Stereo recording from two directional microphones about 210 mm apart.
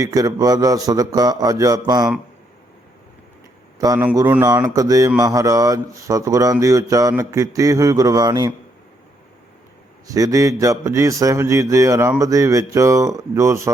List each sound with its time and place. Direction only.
0.0 s mantra: 15° right (ahead or behind)
3.8 s mantra: 15° right (ahead or behind)
10.1 s mantra: 15° right (ahead or behind)